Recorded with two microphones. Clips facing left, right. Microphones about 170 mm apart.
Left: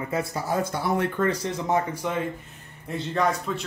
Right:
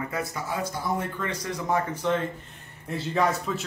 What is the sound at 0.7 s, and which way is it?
Speech, 70° left (ahead or behind).